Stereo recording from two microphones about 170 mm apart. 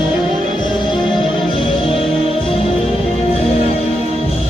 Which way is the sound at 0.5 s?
25° left (ahead or behind).